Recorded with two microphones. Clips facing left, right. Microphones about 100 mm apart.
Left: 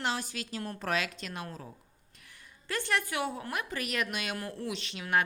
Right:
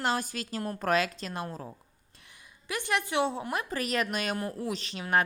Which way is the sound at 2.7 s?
15° right (ahead or behind).